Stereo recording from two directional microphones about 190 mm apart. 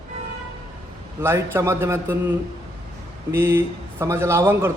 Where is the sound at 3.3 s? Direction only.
15° right (ahead or behind).